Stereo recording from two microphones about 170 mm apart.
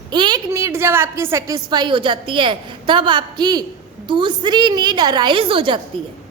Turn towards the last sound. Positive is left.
turn(degrees=-30)  # may be behind; listen again after turning